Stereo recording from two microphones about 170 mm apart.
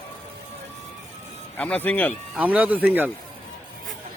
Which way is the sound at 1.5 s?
10° left (ahead or behind).